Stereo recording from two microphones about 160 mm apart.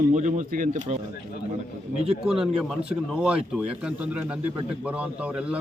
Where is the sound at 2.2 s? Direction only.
5° right (ahead or behind).